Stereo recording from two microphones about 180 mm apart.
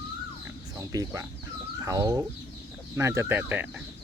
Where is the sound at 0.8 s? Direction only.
20° right (ahead or behind).